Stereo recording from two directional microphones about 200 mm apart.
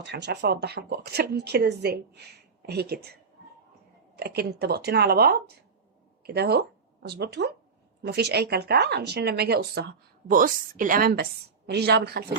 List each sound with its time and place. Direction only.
0.0 s speech: 55° right (ahead or behind)
4.2 s speech: 50° right (ahead or behind)